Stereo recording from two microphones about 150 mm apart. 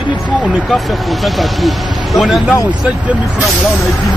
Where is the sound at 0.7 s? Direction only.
Centre (ahead or behind).